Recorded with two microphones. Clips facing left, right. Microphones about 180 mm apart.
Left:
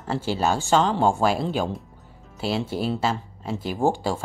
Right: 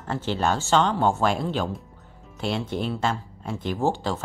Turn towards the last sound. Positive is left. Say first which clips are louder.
# left 2 dB
turn(degrees=10)  # may be behind; listen again after turning